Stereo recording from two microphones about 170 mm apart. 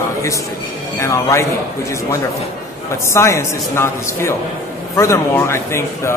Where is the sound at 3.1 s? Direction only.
15° left (ahead or behind).